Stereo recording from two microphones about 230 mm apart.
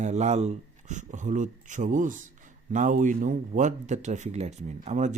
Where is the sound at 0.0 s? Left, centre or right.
Right.